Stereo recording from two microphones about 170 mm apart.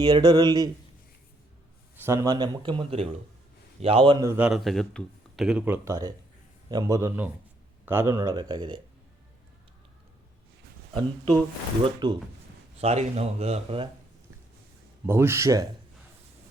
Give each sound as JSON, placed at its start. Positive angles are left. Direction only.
{"t": 0.0, "sound": "speech", "side_deg": -25}
{"t": 2.0, "sound": "speech", "side_deg": -15}
{"t": 4.3, "sound": "speech", "side_deg": -10}
{"t": 11.8, "sound": "speech", "side_deg": -25}
{"t": 12.8, "sound": "speech", "side_deg": -40}
{"t": 15.0, "sound": "speech", "side_deg": -15}